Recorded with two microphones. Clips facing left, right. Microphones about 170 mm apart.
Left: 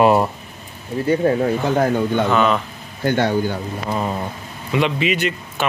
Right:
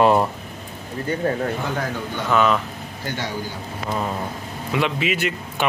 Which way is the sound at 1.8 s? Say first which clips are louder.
Left 9 dB; 50° left (ahead or behind).